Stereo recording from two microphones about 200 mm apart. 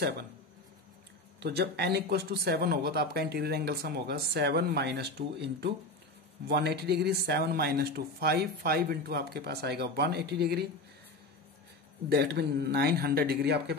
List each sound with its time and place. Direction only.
1.4 s speech: 55° right (ahead or behind)
12.1 s a man's voice: 55° right (ahead or behind)